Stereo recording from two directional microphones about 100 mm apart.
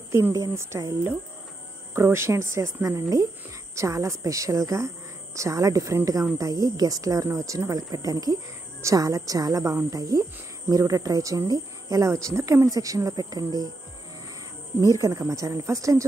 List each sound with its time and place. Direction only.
0.1 s speech: 30° right (ahead or behind)
14.9 s speech: 35° right (ahead or behind)